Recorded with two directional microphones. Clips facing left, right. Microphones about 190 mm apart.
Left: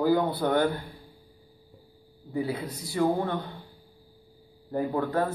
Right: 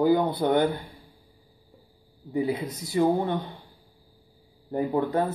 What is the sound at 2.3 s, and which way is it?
Speech, 20° right (ahead or behind).